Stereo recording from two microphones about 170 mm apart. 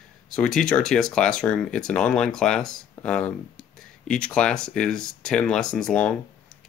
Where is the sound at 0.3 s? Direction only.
5° left (ahead or behind).